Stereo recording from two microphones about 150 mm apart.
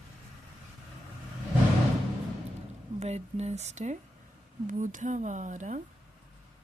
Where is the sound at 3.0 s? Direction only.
45° right (ahead or behind).